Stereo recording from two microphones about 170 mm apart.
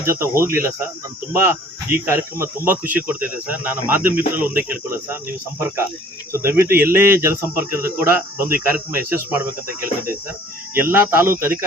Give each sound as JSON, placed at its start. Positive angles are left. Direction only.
{"t": 0.0, "sound": "speech", "side_deg": -15}
{"t": 6.3, "sound": "speech", "side_deg": -15}
{"t": 6.7, "sound": "speech", "side_deg": -60}
{"t": 6.9, "sound": "speech", "side_deg": -15}
{"t": 10.8, "sound": "speech", "side_deg": -10}